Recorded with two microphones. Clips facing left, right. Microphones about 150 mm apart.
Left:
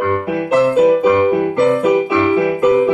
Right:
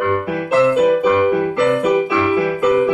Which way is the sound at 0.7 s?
20° left (ahead or behind).